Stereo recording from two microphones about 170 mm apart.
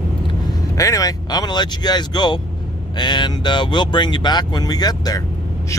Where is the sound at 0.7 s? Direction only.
20° left (ahead or behind).